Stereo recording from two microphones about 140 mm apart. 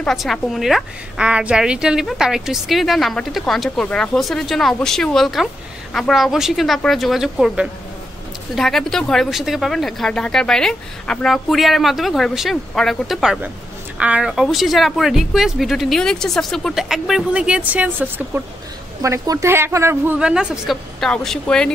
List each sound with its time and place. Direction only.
0.0 s speech: centre (ahead or behind); by 20.2 s 20° right (ahead or behind)
20.2 s speech: 5° right (ahead or behind)